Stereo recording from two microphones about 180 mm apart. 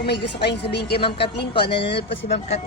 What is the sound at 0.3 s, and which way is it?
Speech, 65° left (ahead or behind).